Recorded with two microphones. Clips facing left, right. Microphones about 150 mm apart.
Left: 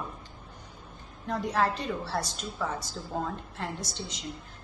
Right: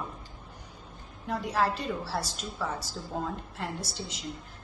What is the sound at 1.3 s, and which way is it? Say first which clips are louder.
A woman's voice: left 1 dB; 5° right (ahead or behind).